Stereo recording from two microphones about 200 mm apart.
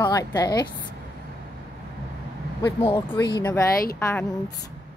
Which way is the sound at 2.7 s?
25° left (ahead or behind).